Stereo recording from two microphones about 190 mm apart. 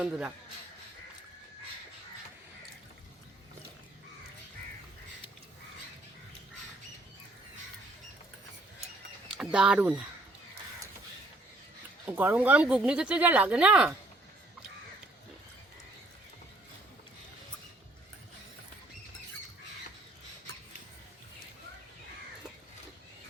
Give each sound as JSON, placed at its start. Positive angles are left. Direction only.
{"t": 0.0, "sound": "speech", "side_deg": -5}
{"t": 9.4, "sound": "speech", "side_deg": -5}
{"t": 12.0, "sound": "speech", "side_deg": -10}